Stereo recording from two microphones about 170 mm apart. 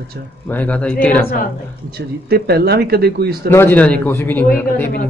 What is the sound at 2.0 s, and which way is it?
Speech, 65° right (ahead or behind).